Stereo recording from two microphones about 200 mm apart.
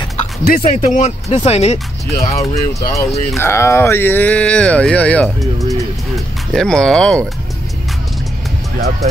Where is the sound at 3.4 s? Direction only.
15° left (ahead or behind).